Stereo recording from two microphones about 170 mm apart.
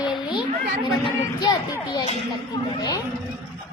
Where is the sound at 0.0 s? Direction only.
25° left (ahead or behind).